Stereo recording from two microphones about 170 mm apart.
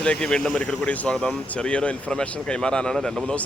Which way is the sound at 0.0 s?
5° left (ahead or behind).